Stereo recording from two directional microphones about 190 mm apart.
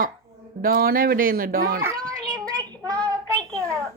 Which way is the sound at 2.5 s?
20° right (ahead or behind).